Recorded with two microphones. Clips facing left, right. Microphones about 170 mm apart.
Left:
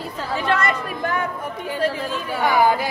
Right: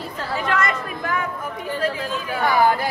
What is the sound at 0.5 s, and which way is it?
Chatter, 30° left (ahead or behind).